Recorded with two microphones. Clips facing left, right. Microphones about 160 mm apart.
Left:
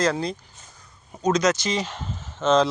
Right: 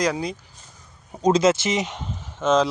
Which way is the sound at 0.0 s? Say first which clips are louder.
Even; 10° right (ahead or behind).